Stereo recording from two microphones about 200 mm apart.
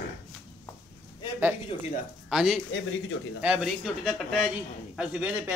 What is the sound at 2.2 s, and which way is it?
A man's voice, centre (ahead or behind).